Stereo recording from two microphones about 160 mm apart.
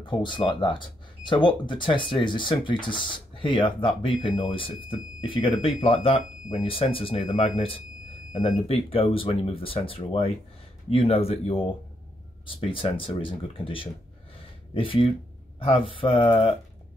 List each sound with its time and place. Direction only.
0.0 s speech: 30° left (ahead or behind)